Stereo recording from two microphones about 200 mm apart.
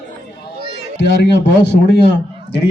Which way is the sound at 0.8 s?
60° left (ahead or behind).